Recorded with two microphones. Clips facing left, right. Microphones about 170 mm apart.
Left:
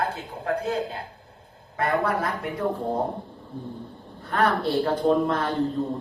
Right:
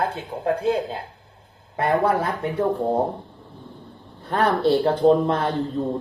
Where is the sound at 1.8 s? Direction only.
30° right (ahead or behind).